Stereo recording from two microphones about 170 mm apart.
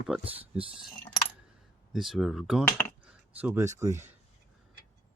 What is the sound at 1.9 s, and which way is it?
Speech, centre (ahead or behind).